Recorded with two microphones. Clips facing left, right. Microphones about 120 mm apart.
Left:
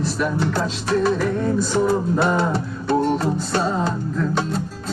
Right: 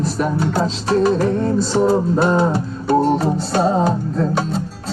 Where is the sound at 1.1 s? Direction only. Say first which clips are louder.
Right 3 dB; 30° right (ahead or behind).